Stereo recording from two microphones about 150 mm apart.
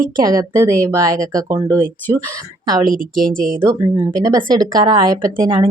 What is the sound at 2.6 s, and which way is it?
Speech, 25° right (ahead or behind).